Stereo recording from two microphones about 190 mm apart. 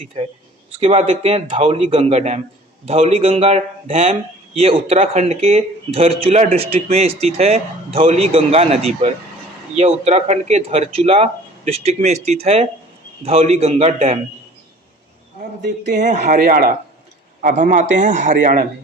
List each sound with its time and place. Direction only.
0.0 s speech: 30° right (ahead or behind)
15.9 s speech: 40° right (ahead or behind)